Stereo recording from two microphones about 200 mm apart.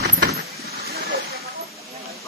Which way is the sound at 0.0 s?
50° right (ahead or behind).